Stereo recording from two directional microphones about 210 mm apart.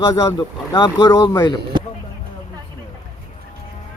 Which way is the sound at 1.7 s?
20° right (ahead or behind).